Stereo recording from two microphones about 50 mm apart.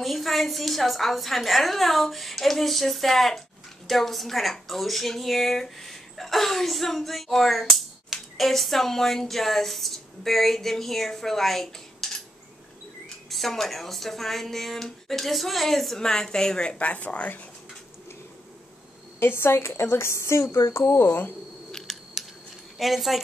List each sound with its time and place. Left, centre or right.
0.0 s a woman's voice: centre
13.3 s a woman's voice: centre
16.7 s speech: left
19.1 s a woman's voice: left
20.9 s speech: left
22.8 s a woman's voice: centre